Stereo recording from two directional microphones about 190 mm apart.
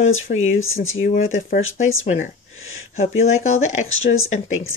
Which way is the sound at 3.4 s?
90° left.